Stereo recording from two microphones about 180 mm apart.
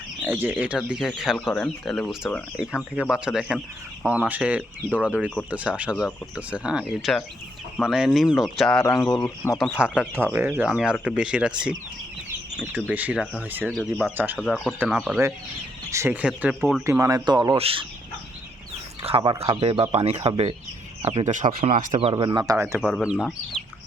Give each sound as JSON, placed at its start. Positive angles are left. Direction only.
{"t": 0.2, "sound": "speech", "side_deg": -10}
{"t": 8.8, "sound": "speech", "side_deg": 15}
{"t": 9.0, "sound": "speech", "side_deg": 5}
{"t": 13.7, "sound": "speech", "side_deg": 5}
{"t": 14.2, "sound": "speech", "side_deg": -10}
{"t": 15.9, "sound": "speech", "side_deg": -15}
{"t": 17.6, "sound": "speech", "side_deg": -30}
{"t": 19.0, "sound": "speech", "side_deg": -30}
{"t": 21.9, "sound": "speech", "side_deg": -25}
{"t": 22.8, "sound": "speech", "side_deg": 0}